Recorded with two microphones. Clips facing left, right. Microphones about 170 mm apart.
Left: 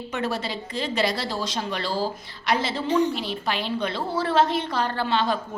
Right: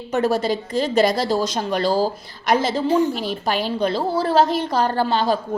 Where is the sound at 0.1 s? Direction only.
40° right (ahead or behind).